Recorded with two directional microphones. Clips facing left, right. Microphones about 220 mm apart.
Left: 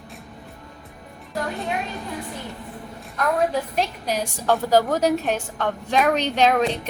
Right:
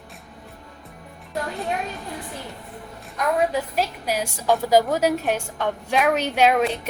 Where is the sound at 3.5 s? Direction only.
10° right (ahead or behind).